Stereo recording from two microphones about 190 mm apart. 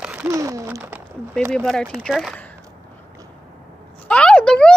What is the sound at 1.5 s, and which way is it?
Speech, 5° left (ahead or behind).